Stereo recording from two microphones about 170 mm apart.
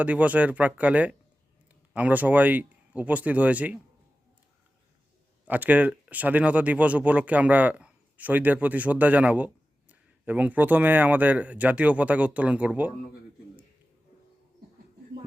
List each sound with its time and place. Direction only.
0.0 s speech: 10° right (ahead or behind)
5.5 s speech: 10° right (ahead or behind)